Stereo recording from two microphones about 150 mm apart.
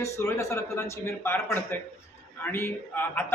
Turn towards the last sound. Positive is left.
turn(degrees=15)  # may be behind; listen again after turning